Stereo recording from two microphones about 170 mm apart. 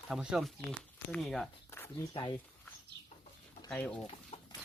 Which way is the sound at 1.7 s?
15° left (ahead or behind).